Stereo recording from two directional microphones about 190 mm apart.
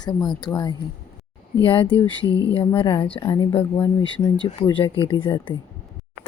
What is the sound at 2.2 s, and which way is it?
Speech, 15° right (ahead or behind).